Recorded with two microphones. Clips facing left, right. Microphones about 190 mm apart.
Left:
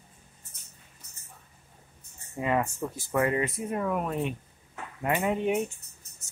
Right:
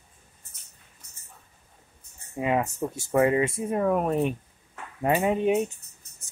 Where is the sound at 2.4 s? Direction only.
20° right (ahead or behind); by 4.4 s 45° right (ahead or behind).